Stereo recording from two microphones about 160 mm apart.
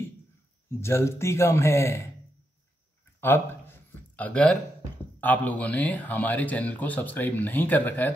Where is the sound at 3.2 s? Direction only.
15° left (ahead or behind).